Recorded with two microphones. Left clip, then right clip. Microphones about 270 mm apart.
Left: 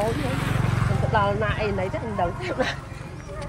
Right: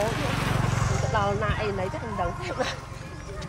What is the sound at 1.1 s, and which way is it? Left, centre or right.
Speech, left.